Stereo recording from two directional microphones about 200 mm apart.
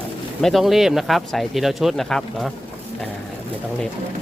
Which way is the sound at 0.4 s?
Centre (ahead or behind).